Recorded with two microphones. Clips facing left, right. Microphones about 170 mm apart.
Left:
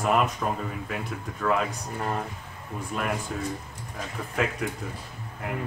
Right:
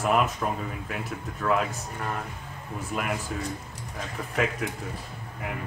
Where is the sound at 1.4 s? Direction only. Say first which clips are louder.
Even; centre (ahead or behind).